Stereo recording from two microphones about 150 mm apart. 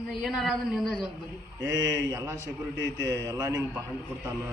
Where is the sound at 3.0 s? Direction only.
20° right (ahead or behind).